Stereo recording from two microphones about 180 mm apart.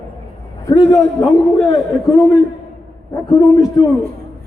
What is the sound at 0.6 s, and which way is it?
A man's voice, 20° left (ahead or behind).